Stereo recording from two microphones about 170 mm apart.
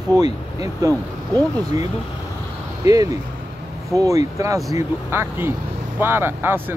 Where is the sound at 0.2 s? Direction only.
20° right (ahead or behind).